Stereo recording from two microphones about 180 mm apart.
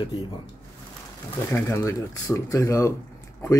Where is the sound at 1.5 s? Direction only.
15° left (ahead or behind).